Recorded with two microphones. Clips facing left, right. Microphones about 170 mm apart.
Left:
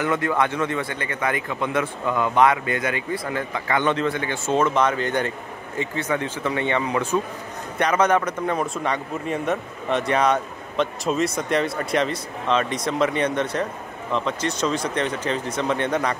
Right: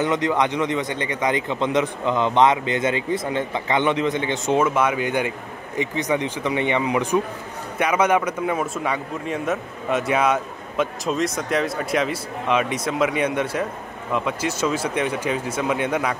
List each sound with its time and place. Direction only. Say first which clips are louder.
0.0 s a man's voice: right 1 dB; 20° right (ahead or behind)